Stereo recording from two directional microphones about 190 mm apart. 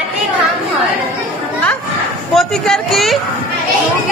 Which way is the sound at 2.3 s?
Centre (ahead or behind).